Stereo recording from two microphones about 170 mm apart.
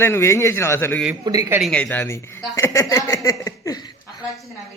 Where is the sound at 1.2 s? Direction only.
20° right (ahead or behind).